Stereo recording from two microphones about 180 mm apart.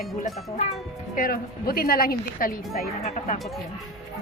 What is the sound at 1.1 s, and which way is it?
A woman's voice, 50° left (ahead or behind).